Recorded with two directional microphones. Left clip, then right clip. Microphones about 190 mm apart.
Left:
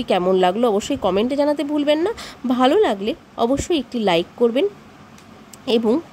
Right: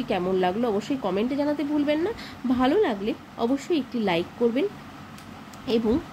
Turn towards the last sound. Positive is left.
turn(degrees=55)  # may be behind; listen again after turning